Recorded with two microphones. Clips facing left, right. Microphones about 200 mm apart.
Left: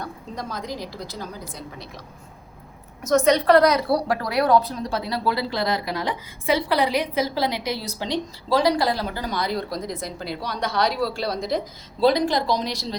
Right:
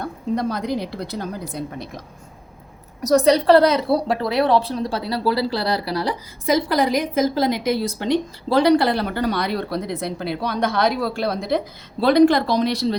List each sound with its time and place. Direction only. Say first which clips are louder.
0.3 s a woman's voice: right 8 dB; 65° right (ahead or behind)
3.0 s a woman's voice: right 3 dB; 35° right (ahead or behind); by 13.0 s 60° right (ahead or behind)